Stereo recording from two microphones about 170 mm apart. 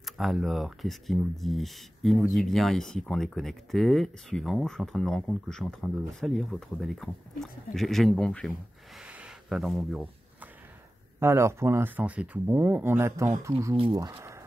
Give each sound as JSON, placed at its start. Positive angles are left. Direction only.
{"t": 0.0, "sound": "speech", "side_deg": 0}
{"t": 9.0, "sound": "a sound", "side_deg": -5}
{"t": 11.1, "sound": "speech", "side_deg": -15}